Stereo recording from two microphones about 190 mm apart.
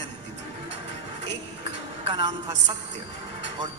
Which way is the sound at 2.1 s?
25° right (ahead or behind).